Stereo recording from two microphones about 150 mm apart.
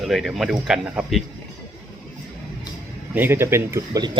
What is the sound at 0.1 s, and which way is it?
Speech, centre (ahead or behind).